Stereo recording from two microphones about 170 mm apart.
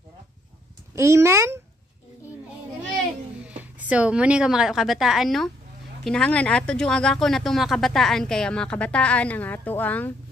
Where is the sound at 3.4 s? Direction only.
10° right (ahead or behind).